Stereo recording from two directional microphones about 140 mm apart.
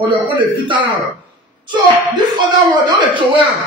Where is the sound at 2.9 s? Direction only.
35° right (ahead or behind).